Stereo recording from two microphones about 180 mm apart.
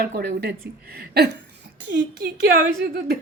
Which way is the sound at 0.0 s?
60° right (ahead or behind).